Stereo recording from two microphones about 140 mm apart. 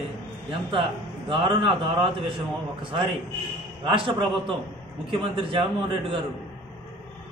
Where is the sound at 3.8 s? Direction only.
40° right (ahead or behind).